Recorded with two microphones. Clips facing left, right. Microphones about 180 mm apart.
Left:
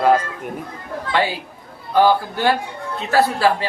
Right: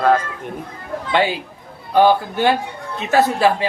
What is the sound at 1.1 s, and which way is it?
Speech, 20° right (ahead or behind).